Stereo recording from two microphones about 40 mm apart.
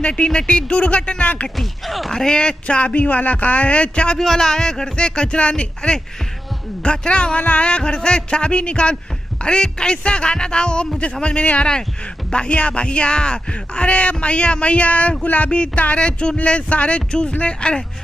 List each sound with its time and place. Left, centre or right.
0.0 s speech: left
1.6 s speech: centre
2.1 s a man's voice: centre
2.6 s speech: left
4.2 s speech: centre; by 15.1 s left
15.2 s a sound: left
15.5 s speech: left